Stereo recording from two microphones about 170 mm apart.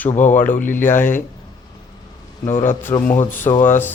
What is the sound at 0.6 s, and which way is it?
Speech, 10° left (ahead or behind).